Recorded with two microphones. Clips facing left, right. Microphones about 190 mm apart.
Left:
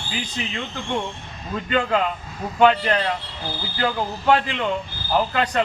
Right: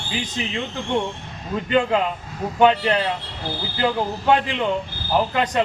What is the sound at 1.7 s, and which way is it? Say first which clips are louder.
A man's voice: right 2 dB; 15° right (ahead or behind).